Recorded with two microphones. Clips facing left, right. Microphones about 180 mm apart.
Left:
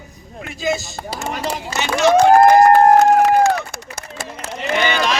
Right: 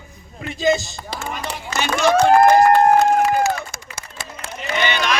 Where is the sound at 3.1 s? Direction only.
60° left (ahead or behind); by 5.1 s 45° left (ahead or behind).